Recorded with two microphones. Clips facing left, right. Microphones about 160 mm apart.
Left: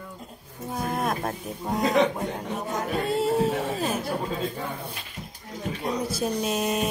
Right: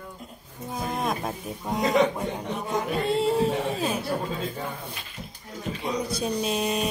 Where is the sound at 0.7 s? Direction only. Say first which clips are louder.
Left 1 dB; 5° left (ahead or behind).